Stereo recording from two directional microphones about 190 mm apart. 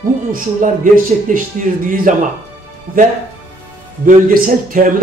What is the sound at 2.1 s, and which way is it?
Speech, 40° right (ahead or behind).